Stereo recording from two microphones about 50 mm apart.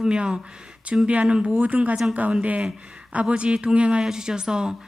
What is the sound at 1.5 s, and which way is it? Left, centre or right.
A woman's voice, right.